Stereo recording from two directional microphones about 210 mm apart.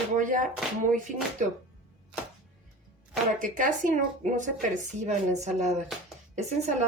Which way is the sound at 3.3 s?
40° right (ahead or behind).